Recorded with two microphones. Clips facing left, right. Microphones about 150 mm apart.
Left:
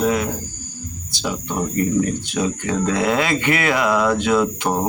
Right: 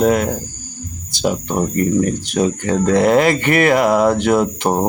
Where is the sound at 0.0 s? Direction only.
55° right (ahead or behind).